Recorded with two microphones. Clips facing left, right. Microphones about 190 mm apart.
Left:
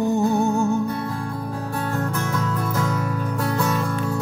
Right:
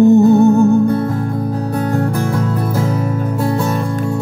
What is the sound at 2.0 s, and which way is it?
Music, 30° right (ahead or behind).